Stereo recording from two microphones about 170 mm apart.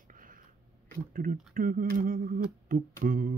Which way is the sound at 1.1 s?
55° right (ahead or behind).